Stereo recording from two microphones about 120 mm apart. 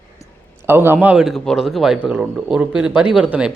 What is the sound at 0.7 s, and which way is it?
A man's voice, 20° right (ahead or behind).